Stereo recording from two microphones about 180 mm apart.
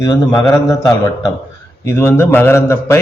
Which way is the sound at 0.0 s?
20° left (ahead or behind).